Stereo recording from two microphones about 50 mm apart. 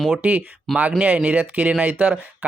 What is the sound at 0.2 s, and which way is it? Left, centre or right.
Speech, right.